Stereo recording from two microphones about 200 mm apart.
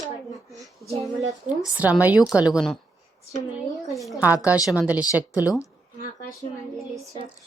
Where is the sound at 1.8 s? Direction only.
10° right (ahead or behind).